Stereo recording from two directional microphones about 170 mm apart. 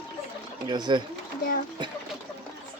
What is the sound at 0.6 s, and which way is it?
Speech, 25° right (ahead or behind).